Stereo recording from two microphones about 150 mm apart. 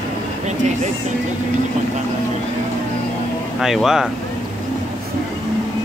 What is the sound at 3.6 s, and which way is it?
Speech, centre (ahead or behind).